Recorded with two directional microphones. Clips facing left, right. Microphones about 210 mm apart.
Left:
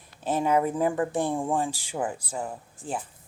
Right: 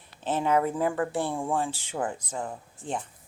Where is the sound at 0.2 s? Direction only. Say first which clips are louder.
Left 1 dB; 10° left (ahead or behind).